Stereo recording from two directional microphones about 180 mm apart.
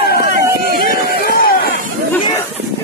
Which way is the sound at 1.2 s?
55° left (ahead or behind).